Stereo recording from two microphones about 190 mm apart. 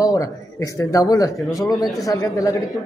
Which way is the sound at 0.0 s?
15° left (ahead or behind).